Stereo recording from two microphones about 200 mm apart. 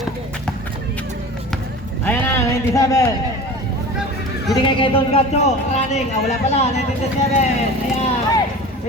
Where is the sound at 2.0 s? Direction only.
10° left (ahead or behind).